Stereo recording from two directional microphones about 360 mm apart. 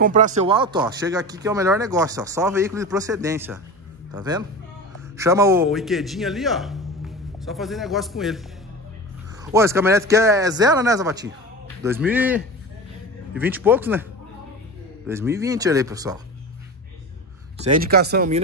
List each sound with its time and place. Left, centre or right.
0.0 s a man's voice: right; by 8.4 s centre
9.4 s speech: centre
15.0 s speech: centre
17.6 s speech: right